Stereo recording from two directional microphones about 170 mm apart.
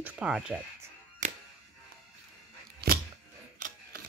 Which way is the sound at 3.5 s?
50° right (ahead or behind).